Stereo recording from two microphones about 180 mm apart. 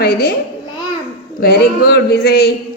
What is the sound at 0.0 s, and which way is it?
Speech, 60° left (ahead or behind).